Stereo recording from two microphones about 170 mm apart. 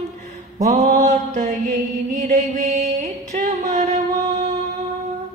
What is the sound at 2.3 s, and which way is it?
Mantra, 45° right (ahead or behind).